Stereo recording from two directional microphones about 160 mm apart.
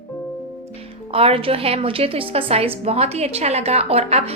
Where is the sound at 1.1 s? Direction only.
35° right (ahead or behind).